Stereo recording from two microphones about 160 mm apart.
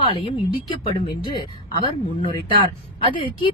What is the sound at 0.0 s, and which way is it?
A woman's voice, 35° left (ahead or behind).